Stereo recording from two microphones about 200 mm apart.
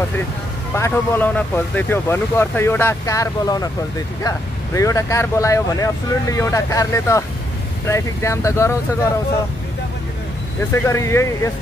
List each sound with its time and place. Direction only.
0.7 s speech: 15° left (ahead or behind)
4.7 s speech: 15° left (ahead or behind)
10.7 s speech: 15° left (ahead or behind)